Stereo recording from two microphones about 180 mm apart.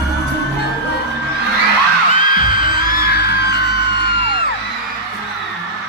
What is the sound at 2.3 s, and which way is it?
Music, 50° left (ahead or behind).